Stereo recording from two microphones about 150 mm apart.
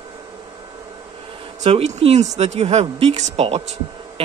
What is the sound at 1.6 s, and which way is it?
Speech, 45° right (ahead or behind).